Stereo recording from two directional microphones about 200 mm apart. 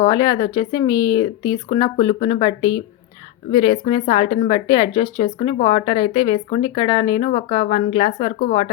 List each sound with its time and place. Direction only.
0.1 s speech: 20° left (ahead or behind)
5.2 s speech: 35° left (ahead or behind)